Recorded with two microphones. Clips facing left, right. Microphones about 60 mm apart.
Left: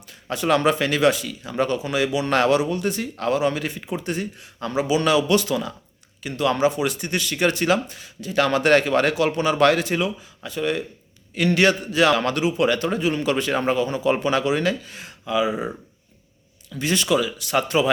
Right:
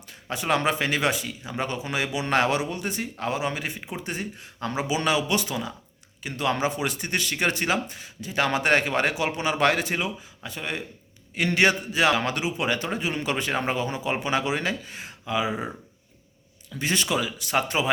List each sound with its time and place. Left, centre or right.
0.1 s speech: right
6.2 s speech: right
16.7 s speech: right